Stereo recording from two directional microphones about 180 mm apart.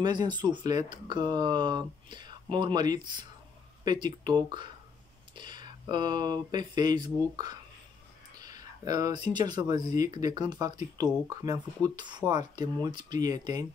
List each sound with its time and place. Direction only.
0.0 s speech: 25° right (ahead or behind)